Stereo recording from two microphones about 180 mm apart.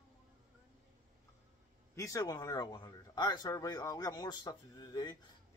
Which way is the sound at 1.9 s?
20° left (ahead or behind).